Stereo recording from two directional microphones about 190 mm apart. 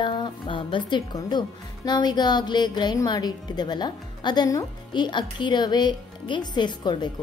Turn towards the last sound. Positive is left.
turn(degrees=25)  # may be behind; listen again after turning